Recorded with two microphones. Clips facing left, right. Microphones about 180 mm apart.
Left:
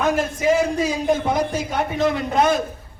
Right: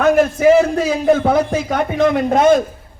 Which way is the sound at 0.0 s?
65° right (ahead or behind).